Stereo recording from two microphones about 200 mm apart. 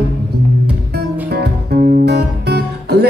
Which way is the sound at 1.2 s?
55° right (ahead or behind).